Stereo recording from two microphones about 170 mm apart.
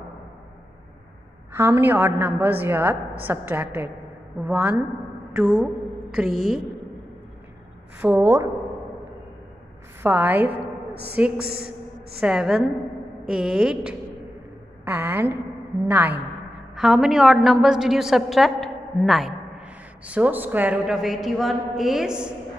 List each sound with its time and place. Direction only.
1.5 s a woman's voice: 15° right (ahead or behind)
8.0 s a woman's voice: 10° right (ahead or behind)
10.0 s a sound: 10° right (ahead or behind)
11.2 s a woman's voice: 5° right (ahead or behind)
16.7 s a woman's voice: centre (ahead or behind)